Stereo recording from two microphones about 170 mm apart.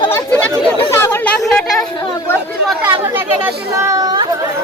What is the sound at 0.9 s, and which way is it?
Speech, 15° left (ahead or behind).